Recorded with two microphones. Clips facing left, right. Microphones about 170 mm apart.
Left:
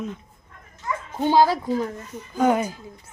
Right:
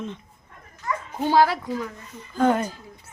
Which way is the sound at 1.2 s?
20° left (ahead or behind).